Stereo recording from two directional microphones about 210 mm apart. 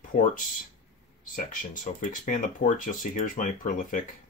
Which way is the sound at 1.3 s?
40° left (ahead or behind).